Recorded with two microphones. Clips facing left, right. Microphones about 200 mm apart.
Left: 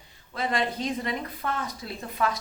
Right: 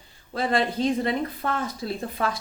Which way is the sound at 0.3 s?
30° right (ahead or behind).